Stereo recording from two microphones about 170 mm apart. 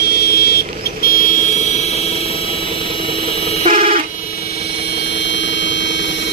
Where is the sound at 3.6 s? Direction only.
50° right (ahead or behind).